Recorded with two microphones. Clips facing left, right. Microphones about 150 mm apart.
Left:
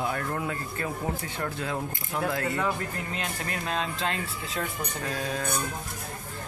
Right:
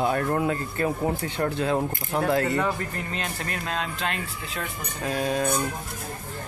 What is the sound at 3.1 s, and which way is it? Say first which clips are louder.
Speech: right 2 dB; 10° left (ahead or behind).